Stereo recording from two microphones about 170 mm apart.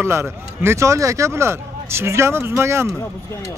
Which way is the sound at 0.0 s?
15° right (ahead or behind).